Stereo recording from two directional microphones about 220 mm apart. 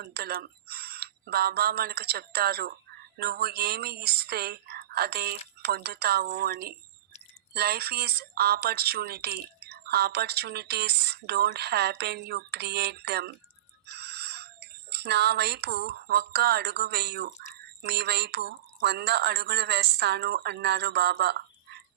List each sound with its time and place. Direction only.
0.0 s speech: 45° right (ahead or behind)